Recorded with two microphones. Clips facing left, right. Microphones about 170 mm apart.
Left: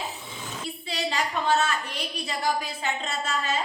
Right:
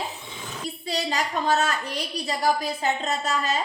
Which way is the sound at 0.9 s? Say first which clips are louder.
Right 2 dB; 40° right (ahead or behind).